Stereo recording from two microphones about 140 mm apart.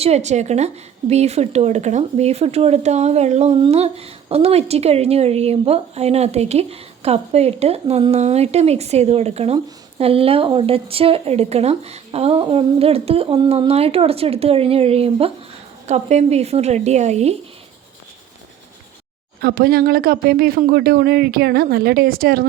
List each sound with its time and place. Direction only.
0.0 s speech: 50° right (ahead or behind)
19.4 s speech: 90° right